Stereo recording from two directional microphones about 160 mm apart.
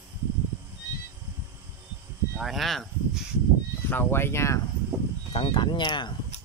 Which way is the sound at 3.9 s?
15° left (ahead or behind).